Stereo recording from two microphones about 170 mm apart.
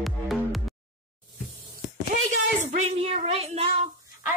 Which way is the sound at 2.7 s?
40° right (ahead or behind).